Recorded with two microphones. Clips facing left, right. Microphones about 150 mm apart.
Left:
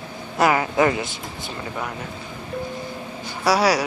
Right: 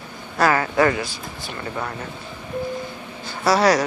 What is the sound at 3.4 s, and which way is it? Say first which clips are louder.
Speech: right 2 dB; 10° left (ahead or behind).